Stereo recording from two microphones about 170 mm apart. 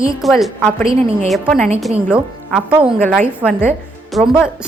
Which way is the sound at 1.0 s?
35° right (ahead or behind).